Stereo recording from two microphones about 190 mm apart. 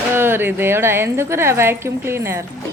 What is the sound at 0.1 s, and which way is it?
Speech, 10° right (ahead or behind).